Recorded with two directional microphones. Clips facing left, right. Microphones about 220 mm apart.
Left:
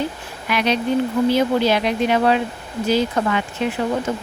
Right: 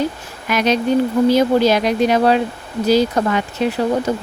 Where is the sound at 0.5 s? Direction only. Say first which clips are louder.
Right 3 dB; 40° right (ahead or behind).